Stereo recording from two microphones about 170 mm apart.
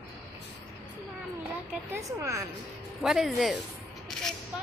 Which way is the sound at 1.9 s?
20° right (ahead or behind).